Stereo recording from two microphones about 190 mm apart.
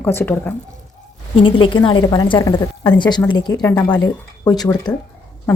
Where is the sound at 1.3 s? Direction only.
25° left (ahead or behind).